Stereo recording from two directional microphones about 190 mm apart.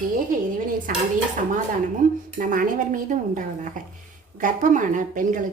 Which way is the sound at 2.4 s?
45° right (ahead or behind).